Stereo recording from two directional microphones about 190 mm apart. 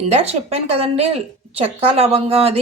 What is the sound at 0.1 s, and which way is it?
A woman's voice, 35° right (ahead or behind).